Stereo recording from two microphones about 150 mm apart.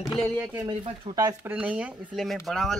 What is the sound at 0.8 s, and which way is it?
Speech, 30° right (ahead or behind).